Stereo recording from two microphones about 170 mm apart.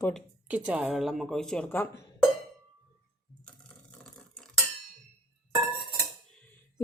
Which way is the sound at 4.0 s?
5° left (ahead or behind).